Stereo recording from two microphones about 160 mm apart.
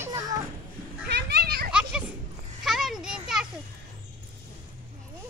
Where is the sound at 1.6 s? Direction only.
5° right (ahead or behind).